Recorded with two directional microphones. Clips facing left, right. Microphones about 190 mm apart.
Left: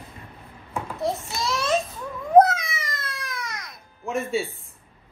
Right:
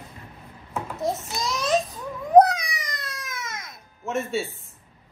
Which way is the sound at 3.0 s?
Centre (ahead or behind).